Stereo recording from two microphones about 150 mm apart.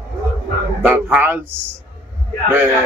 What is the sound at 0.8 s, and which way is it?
Speech, 10° right (ahead or behind).